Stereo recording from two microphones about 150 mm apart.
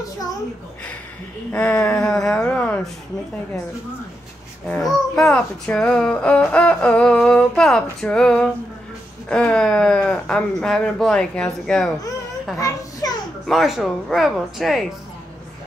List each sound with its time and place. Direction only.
1.5 s a child's voice: 10° left (ahead or behind)
4.6 s a child's voice: 5° left (ahead or behind)
12.5 s a sound: 20° left (ahead or behind)
13.5 s speech: centre (ahead or behind)